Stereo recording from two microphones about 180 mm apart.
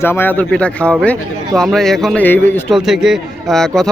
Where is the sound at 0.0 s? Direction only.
10° left (ahead or behind).